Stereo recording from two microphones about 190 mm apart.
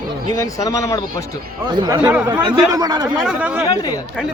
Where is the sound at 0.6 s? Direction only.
15° left (ahead or behind).